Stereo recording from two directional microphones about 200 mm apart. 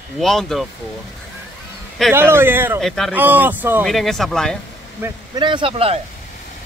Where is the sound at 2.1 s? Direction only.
10° right (ahead or behind).